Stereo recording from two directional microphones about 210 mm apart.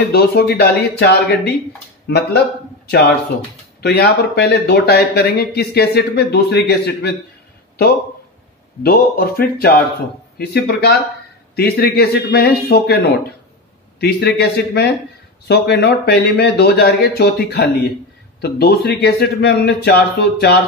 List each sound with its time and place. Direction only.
0.1 s speech: 50° left (ahead or behind)
3.8 s speech: 50° left (ahead or behind)
8.8 s speech: 45° left (ahead or behind)